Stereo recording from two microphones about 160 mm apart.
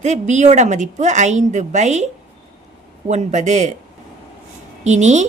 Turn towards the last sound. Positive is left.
turn(degrees=-45)  # may be behind; listen again after turning